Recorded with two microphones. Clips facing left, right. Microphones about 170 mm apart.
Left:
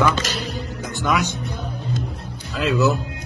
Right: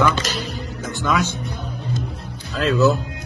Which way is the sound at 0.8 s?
15° left (ahead or behind).